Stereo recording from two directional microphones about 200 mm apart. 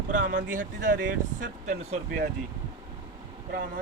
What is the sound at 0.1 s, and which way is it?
Speech, 40° right (ahead or behind).